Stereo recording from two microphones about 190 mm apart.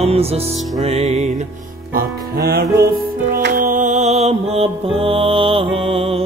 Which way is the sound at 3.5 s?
45° right (ahead or behind).